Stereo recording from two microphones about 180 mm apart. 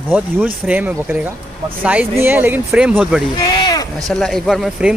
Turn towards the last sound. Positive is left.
turn(degrees=-5)  # may be behind; listen again after turning